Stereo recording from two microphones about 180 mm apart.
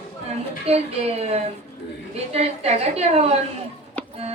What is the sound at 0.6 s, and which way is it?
A woman's voice, 35° right (ahead or behind).